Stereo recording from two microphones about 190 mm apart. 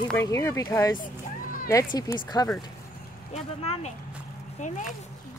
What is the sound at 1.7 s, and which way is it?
Speech, 20° left (ahead or behind).